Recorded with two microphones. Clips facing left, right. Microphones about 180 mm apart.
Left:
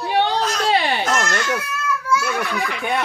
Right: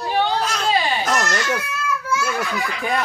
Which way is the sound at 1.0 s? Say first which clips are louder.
Even; centre (ahead or behind).